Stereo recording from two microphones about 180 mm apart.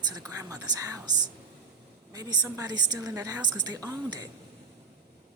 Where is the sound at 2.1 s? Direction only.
20° right (ahead or behind).